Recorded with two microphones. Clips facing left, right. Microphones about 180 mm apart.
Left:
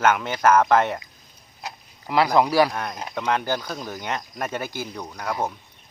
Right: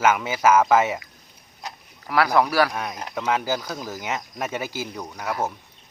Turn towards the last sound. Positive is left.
turn(degrees=-5)  # may be behind; listen again after turning